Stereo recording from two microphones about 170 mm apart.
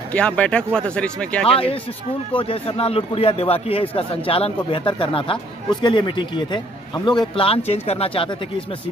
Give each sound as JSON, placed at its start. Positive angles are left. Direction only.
{"t": 0.1, "sound": "speech", "side_deg": 5}
{"t": 2.3, "sound": "a man's voice", "side_deg": 35}